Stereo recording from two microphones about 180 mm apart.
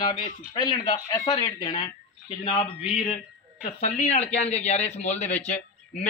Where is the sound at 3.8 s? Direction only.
40° left (ahead or behind).